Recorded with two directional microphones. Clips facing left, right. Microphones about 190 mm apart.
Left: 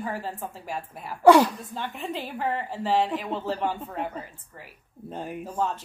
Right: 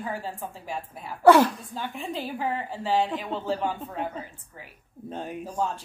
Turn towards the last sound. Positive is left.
turn(degrees=5)  # may be behind; listen again after turning